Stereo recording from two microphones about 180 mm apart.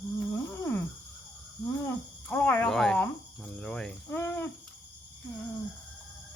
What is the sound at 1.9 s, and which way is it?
Cricket, 10° left (ahead or behind).